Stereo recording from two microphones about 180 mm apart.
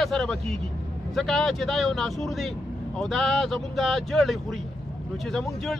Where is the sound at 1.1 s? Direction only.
Centre (ahead or behind).